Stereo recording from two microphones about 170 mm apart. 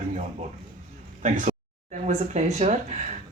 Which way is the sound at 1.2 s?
45° right (ahead or behind).